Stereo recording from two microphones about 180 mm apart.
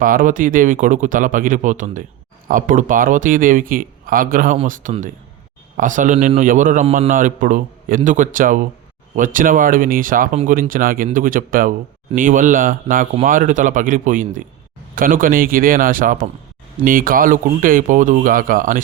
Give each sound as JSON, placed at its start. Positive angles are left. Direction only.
{"t": 0.0, "sound": "speech", "side_deg": -50}